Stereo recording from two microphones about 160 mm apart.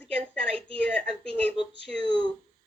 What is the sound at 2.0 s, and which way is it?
Speech, 35° right (ahead or behind).